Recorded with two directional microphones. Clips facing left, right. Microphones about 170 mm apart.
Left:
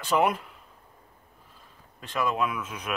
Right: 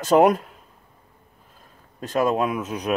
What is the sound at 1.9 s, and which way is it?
Speech, 40° right (ahead or behind).